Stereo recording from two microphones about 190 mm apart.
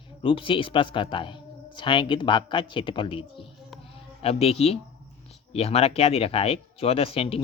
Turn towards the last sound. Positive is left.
turn(degrees=30)  # may be behind; listen again after turning